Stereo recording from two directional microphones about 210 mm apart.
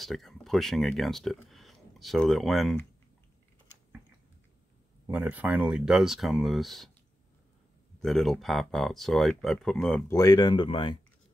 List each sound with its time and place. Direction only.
0.0 s speech: centre (ahead or behind)
5.0 s speech: 10° right (ahead or behind)
8.0 s speech: centre (ahead or behind)
10.1 s speech: 20° left (ahead or behind)